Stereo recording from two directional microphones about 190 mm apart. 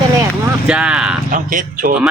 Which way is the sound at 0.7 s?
5° right (ahead or behind).